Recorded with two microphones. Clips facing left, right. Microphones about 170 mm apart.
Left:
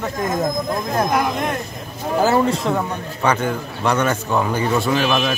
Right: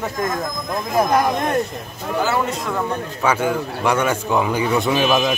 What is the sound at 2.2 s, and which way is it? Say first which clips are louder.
Speech: left 6 dB; 40° left (ahead or behind).